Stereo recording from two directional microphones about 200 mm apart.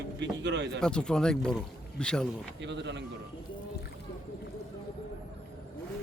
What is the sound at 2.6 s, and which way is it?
Speech, 60° right (ahead or behind).